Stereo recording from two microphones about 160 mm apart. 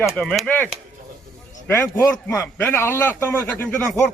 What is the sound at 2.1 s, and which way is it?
A man's voice, 15° left (ahead or behind).